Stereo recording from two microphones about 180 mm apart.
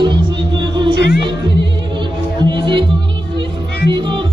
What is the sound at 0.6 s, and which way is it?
Music, 25° right (ahead or behind).